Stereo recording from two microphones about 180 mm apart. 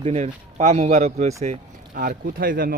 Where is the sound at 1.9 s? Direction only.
50° right (ahead or behind).